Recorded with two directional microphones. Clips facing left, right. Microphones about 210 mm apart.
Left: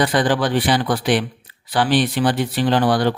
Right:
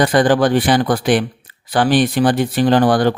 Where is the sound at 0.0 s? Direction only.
45° right (ahead or behind).